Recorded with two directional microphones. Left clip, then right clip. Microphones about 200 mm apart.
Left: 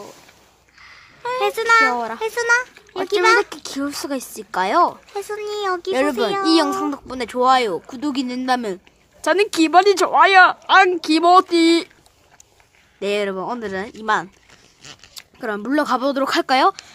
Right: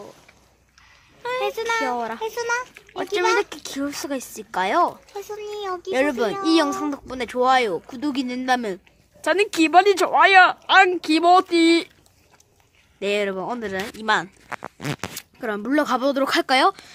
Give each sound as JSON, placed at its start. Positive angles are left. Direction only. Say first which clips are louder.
{"t": 1.4, "sound": "a sound", "louder": "left 10 dB", "side_deg": 45}
{"t": 2.2, "sound": "a child's voice", "louder": "left 10 dB", "side_deg": 45}
{"t": 2.7, "sound": "a sound", "louder": "left 4 dB", "side_deg": 0}
{"t": 3.3, "sound": "speech", "louder": "left 4 dB", "side_deg": 0}
{"t": 5.1, "sound": "a child's voice", "louder": "left 5 dB", "side_deg": 40}
{"t": 5.9, "sound": "speech", "louder": "even", "side_deg": 0}
{"t": 13.0, "sound": "speech", "louder": "left 2 dB", "side_deg": 0}